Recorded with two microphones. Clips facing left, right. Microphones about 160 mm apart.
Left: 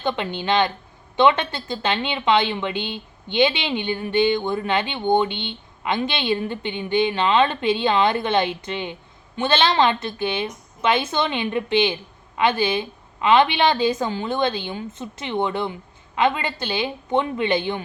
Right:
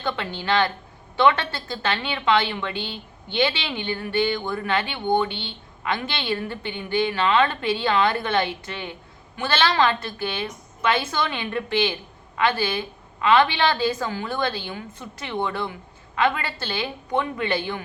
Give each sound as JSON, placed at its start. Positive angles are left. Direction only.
{"t": 0.0, "sound": "a woman's voice", "side_deg": 20}